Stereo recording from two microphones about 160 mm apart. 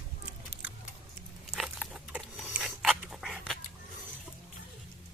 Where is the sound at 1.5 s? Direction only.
Centre (ahead or behind).